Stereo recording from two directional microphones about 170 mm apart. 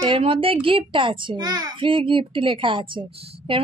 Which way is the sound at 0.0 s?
30° right (ahead or behind).